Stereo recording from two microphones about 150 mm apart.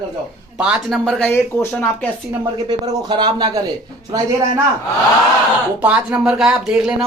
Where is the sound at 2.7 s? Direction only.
30° right (ahead or behind).